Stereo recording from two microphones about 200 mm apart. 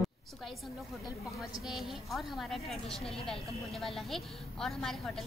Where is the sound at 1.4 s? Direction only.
Centre (ahead or behind).